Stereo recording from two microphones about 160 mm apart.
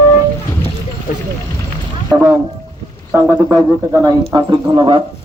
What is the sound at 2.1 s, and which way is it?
Speech, 10° right (ahead or behind).